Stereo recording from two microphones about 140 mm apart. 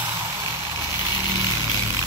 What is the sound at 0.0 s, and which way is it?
Vehicle, 20° right (ahead or behind).